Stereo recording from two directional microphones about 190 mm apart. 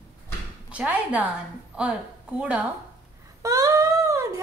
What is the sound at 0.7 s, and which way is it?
Speech, 5° right (ahead or behind).